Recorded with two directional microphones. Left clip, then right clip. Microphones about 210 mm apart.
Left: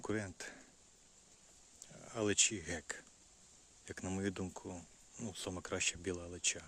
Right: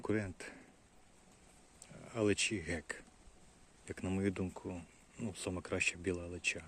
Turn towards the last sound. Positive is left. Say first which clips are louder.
# right 2 dB
turn(degrees=5)  # may be behind; listen again after turning